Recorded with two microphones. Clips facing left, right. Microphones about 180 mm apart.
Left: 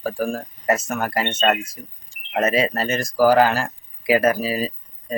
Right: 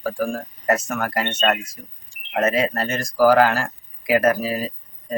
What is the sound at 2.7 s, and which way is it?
Speech, 25° left (ahead or behind).